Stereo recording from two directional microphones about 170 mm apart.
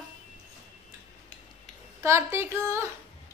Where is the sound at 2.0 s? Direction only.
15° right (ahead or behind).